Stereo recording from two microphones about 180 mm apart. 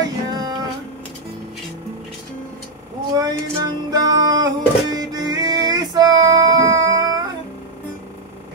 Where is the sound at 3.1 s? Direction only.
20° right (ahead or behind).